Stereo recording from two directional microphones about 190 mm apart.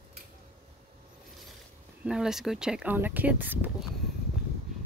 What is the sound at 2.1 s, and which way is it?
Speech, 5° right (ahead or behind).